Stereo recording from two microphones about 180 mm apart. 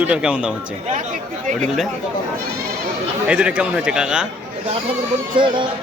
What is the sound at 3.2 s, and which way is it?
A man's voice, 5° right (ahead or behind).